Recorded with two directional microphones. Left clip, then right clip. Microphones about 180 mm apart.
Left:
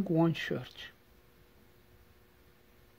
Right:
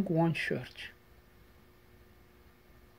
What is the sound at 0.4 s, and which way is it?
Speech, 20° left (ahead or behind).